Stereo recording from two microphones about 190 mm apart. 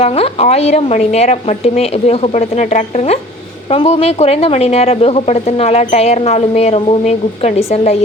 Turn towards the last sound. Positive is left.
turn(degrees=35)  # may be behind; listen again after turning